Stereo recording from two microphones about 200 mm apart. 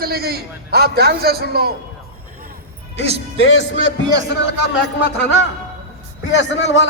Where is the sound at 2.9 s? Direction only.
30° right (ahead or behind).